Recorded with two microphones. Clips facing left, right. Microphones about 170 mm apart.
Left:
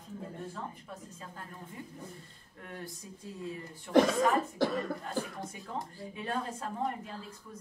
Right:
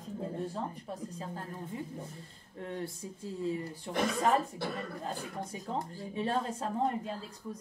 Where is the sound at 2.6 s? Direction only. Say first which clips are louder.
Right 6 dB; 25° right (ahead or behind).